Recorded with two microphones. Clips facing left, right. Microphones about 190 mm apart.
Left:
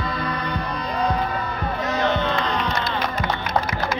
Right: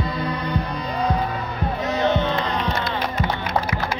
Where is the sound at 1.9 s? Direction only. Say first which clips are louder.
Right 2 dB; 20° right (ahead or behind).